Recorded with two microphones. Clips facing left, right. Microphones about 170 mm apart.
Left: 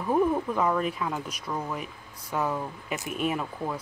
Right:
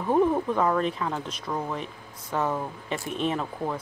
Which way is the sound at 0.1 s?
25° right (ahead or behind).